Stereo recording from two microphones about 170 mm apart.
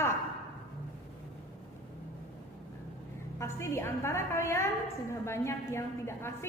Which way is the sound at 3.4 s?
15° left (ahead or behind).